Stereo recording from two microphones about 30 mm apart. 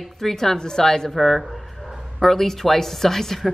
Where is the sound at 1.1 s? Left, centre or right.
Centre.